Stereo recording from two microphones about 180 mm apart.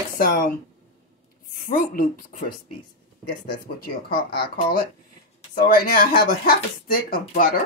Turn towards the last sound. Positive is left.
turn(degrees=55)  # may be behind; listen again after turning